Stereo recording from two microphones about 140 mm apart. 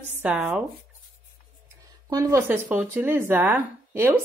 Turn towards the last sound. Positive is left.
turn(degrees=-15)  # may be behind; listen again after turning